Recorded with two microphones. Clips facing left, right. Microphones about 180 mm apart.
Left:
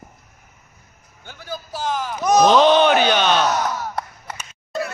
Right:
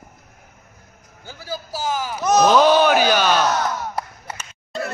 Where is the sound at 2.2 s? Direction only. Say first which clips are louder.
Left 1 dB; 15° left (ahead or behind).